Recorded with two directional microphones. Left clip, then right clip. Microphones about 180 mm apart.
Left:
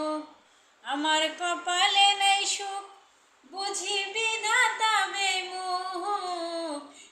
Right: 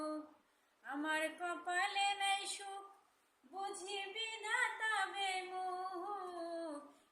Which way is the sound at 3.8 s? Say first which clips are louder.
Left 15 dB; 10° right (ahead or behind).